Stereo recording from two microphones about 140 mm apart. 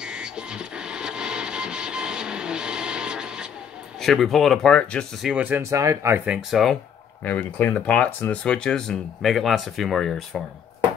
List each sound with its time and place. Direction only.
0.0 s music: 5° right (ahead or behind)
4.0 s speech: centre (ahead or behind)
5.3 s speech: 10° right (ahead or behind)
6.2 s speech: 5° right (ahead or behind)
7.2 s speech: 15° left (ahead or behind)